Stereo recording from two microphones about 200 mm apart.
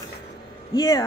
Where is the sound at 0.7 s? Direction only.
20° left (ahead or behind).